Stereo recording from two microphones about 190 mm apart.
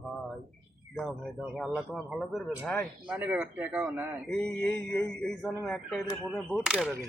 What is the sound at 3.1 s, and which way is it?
Speech, 10° right (ahead or behind).